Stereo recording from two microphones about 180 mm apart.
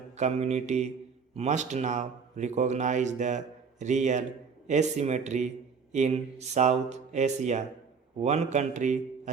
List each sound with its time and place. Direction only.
0.2 s a man's voice: 35° right (ahead or behind)